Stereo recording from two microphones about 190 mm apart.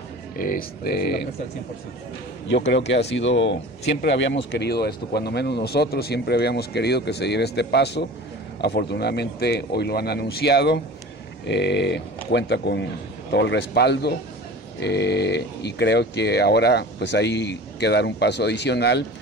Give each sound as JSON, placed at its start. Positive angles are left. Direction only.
{"t": 0.4, "sound": "speech", "side_deg": 50}
{"t": 2.4, "sound": "speech", "side_deg": 70}